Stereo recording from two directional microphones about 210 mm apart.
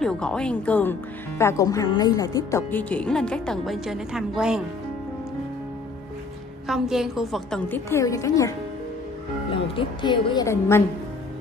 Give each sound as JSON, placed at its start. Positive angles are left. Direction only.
{"t": 0.0, "sound": "speech", "side_deg": 5}
{"t": 6.7, "sound": "a woman's voice", "side_deg": 0}